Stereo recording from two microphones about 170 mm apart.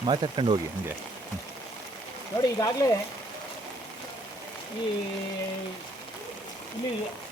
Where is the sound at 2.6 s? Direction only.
20° left (ahead or behind).